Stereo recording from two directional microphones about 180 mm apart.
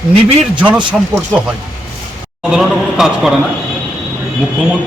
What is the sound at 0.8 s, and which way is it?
Speech, 25° right (ahead or behind).